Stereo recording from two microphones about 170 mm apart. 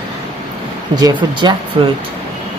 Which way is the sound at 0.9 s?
25° right (ahead or behind).